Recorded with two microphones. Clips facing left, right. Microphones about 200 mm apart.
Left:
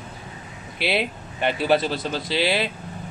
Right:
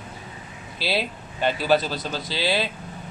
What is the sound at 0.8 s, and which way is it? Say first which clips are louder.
A man's voice: left 2 dB; 20° left (ahead or behind).